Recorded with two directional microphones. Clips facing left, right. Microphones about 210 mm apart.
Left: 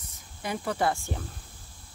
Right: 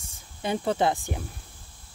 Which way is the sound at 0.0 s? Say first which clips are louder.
Right 5 dB; 25° right (ahead or behind).